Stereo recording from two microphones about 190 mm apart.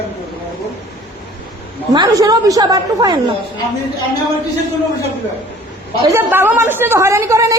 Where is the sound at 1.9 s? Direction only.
20° right (ahead or behind).